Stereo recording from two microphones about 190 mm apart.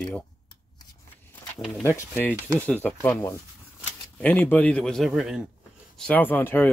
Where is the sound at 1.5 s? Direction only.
Centre (ahead or behind).